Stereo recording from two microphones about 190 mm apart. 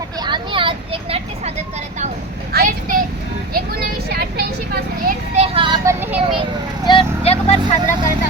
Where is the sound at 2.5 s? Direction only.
50° right (ahead or behind).